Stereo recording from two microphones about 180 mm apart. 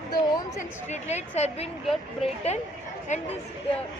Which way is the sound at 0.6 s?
40° left (ahead or behind).